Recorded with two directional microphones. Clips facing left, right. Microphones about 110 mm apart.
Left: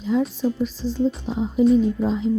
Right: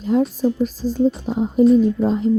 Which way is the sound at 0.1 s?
50° right (ahead or behind).